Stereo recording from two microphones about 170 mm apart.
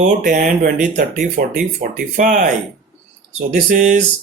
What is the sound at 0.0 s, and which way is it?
Speech, 55° right (ahead or behind).